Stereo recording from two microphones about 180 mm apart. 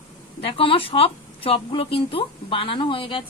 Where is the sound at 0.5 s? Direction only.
30° left (ahead or behind).